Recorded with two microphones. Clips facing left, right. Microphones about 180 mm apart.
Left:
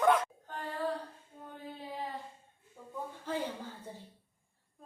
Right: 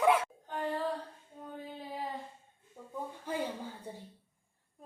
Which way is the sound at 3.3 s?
15° right (ahead or behind).